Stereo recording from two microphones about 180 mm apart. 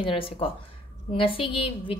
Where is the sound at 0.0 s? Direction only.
30° left (ahead or behind).